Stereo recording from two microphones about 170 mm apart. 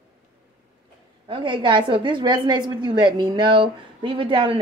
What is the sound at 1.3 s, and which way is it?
A woman's voice, 30° right (ahead or behind).